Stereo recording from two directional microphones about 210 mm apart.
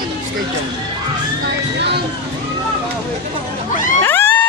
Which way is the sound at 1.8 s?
50° right (ahead or behind).